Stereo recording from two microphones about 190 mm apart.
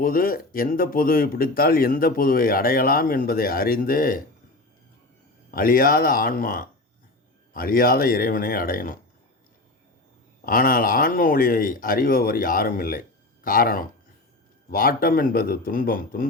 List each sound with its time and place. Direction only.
0.0 s speech: 50° left (ahead or behind)
5.5 s speech: 50° left (ahead or behind)
10.4 s speech: 50° left (ahead or behind)